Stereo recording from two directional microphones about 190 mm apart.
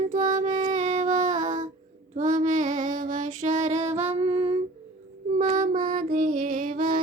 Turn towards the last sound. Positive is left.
turn(degrees=-45)  # may be behind; listen again after turning